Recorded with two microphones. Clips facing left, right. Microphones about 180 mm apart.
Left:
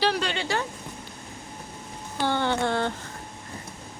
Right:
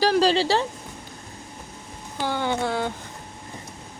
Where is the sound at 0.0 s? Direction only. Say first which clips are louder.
Right 7 dB; 40° right (ahead or behind).